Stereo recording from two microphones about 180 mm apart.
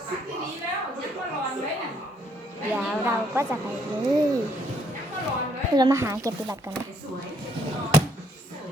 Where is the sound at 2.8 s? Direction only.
10° right (ahead or behind).